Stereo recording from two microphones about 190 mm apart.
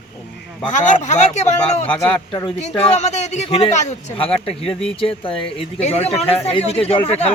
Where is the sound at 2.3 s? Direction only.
25° left (ahead or behind).